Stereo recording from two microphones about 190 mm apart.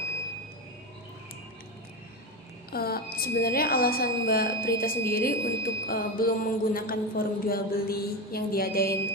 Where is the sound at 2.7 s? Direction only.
55° left (ahead or behind).